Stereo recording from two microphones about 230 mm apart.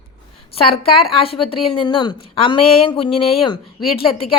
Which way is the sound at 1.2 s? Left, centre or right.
Left.